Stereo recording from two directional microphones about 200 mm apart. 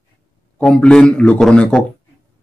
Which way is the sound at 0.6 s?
5° left (ahead or behind).